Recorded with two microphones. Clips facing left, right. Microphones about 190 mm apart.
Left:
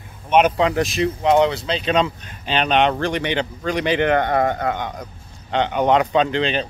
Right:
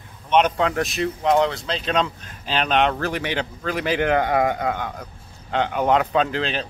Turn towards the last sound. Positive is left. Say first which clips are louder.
# left 3 dB
turn(degrees=0)  # may be behind; listen again after turning